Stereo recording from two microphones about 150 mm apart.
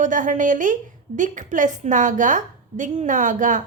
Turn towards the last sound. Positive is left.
turn(degrees=-60)  # may be behind; listen again after turning